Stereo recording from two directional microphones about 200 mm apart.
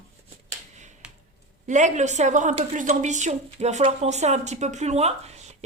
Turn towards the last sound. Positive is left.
turn(degrees=-35)  # may be behind; listen again after turning